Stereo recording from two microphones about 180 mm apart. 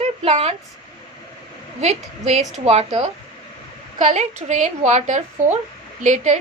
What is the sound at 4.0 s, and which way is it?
A woman's voice, 40° right (ahead or behind).